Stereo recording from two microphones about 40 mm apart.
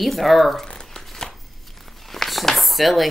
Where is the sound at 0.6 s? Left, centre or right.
Centre.